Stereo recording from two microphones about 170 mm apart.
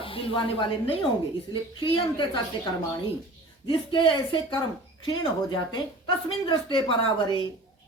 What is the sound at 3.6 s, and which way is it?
Speech, 30° left (ahead or behind).